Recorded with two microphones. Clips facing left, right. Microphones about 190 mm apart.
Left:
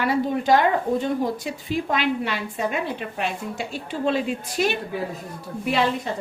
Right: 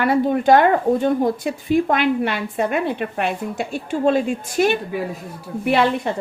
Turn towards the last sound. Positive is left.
turn(degrees=-65)  # may be behind; listen again after turning